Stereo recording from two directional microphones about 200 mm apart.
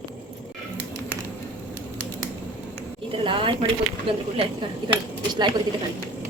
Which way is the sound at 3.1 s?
25° right (ahead or behind).